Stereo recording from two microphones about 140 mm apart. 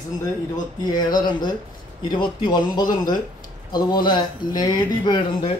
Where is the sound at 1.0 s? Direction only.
30° left (ahead or behind).